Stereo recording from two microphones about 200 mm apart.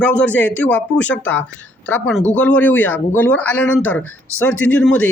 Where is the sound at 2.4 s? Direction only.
10° left (ahead or behind).